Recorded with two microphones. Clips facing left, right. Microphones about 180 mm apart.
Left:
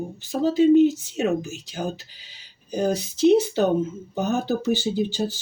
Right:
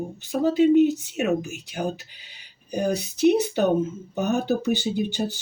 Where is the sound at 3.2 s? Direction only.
20° right (ahead or behind).